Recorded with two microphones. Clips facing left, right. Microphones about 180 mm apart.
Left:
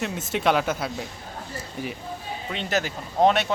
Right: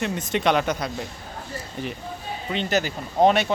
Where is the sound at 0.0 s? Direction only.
5° left (ahead or behind).